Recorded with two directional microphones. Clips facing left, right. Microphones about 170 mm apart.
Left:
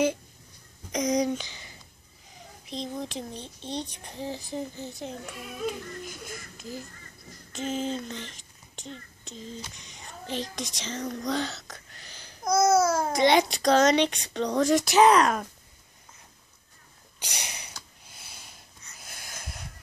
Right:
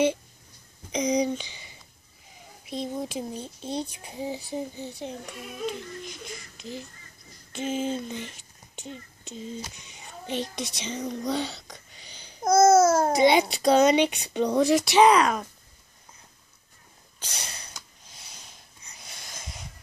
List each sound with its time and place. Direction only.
0.9 s speech: centre (ahead or behind)
2.7 s speech: 5° right (ahead or behind)
4.8 s speech: centre (ahead or behind)
7.6 s speech: 5° right (ahead or behind)
12.4 s babbling: 50° right (ahead or behind)
13.1 s speech: 5° right (ahead or behind)
17.2 s snort: 15° left (ahead or behind)
18.3 s a sound: 5° left (ahead or behind)
18.9 s wheeze: 5° left (ahead or behind)